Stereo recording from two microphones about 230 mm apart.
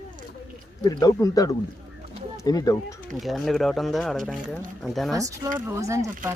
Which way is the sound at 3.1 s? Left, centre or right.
Centre.